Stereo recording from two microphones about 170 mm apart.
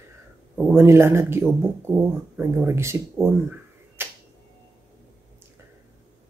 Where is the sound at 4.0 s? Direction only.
15° right (ahead or behind).